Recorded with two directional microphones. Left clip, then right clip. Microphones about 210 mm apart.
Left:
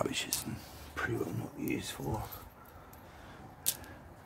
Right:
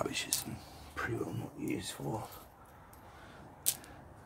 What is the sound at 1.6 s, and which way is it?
Speech, 10° left (ahead or behind).